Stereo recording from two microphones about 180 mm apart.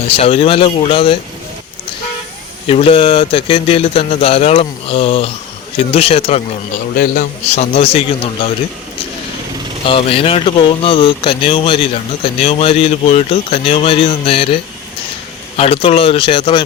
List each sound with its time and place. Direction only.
0.2 s speech: 35° left (ahead or behind)
2.6 s speech: 30° left (ahead or behind)
6.9 s a man's voice: 55° left (ahead or behind)
7.5 s speech: 35° left (ahead or behind)
9.8 s speech: 30° left (ahead or behind)